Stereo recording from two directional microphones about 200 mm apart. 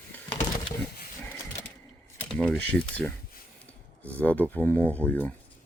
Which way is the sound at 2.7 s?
5° left (ahead or behind).